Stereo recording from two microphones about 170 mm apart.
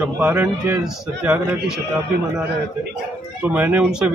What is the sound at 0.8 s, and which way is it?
Speech, 5° right (ahead or behind).